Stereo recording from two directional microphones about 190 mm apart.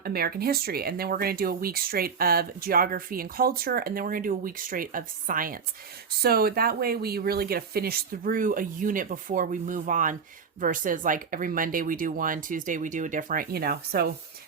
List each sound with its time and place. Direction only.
0.0 s speech: 55° right (ahead or behind)